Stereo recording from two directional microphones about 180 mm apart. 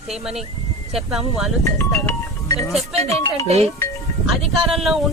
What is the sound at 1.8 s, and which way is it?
Speech, 15° left (ahead or behind).